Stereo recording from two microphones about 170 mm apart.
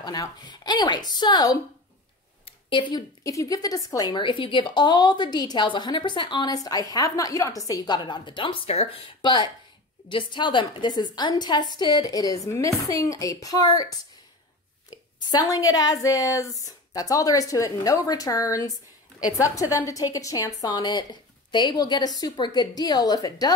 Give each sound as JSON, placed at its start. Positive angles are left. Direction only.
{"t": 0.0, "sound": "a woman's voice", "side_deg": 25}